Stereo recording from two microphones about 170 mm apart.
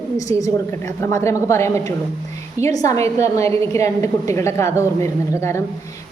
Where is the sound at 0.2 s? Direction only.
20° left (ahead or behind).